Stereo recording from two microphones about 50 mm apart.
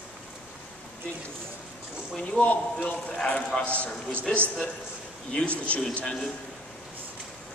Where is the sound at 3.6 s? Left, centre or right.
Left.